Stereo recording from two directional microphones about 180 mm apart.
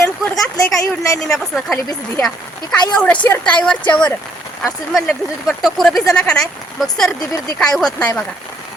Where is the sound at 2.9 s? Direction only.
5° left (ahead or behind).